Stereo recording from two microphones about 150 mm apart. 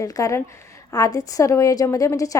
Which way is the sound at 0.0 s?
20° left (ahead or behind).